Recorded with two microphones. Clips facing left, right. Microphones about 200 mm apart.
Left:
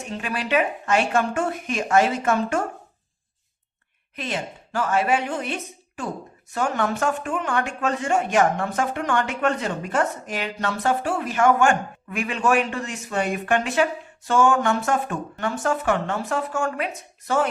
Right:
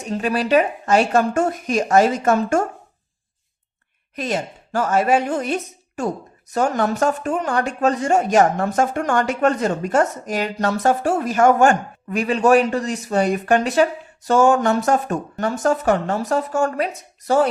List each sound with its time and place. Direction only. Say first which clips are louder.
0.1 s speech: right 7 dB; 40° right (ahead or behind)
4.1 s speech: right 5 dB; 40° right (ahead or behind)